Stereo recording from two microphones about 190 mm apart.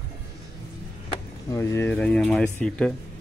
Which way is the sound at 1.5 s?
15° left (ahead or behind).